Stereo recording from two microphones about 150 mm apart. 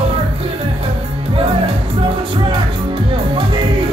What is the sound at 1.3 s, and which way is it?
Music, 35° right (ahead or behind).